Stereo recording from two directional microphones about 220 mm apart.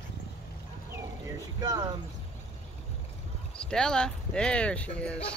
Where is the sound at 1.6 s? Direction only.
15° right (ahead or behind).